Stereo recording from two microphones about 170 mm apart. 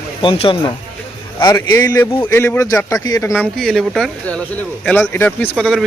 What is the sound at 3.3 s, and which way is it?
Speech, centre (ahead or behind).